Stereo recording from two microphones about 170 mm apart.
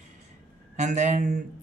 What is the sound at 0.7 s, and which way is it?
Speech, 45° right (ahead or behind).